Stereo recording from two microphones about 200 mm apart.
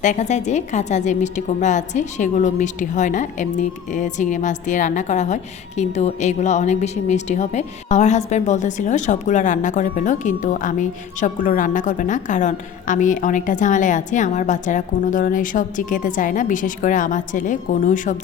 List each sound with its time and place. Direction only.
0.0 s a woman's voice: 35° left (ahead or behind)